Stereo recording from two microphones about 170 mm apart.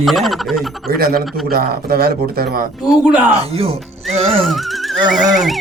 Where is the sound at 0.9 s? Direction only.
60° right (ahead or behind).